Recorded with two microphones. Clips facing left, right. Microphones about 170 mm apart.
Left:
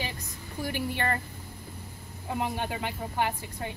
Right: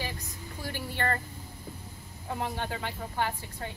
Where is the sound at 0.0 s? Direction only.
20° left (ahead or behind).